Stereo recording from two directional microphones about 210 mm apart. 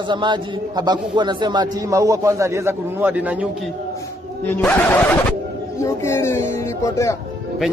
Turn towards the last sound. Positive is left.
turn(degrees=15)  # may be behind; listen again after turning